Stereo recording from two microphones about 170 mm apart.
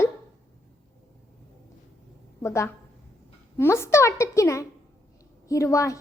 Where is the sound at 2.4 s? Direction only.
15° left (ahead or behind).